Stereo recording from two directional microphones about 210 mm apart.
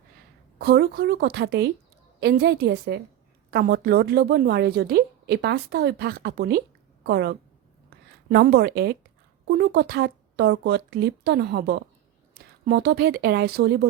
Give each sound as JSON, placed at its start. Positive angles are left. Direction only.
{"t": 0.6, "sound": "a woman's voice", "side_deg": -50}
{"t": 7.9, "sound": "a sound", "side_deg": -50}
{"t": 9.5, "sound": "a woman's voice", "side_deg": -50}